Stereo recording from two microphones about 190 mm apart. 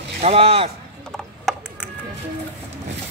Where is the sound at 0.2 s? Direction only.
30° right (ahead or behind).